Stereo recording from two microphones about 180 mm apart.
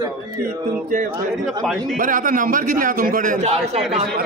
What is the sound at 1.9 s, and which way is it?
A man's voice, 50° right (ahead or behind).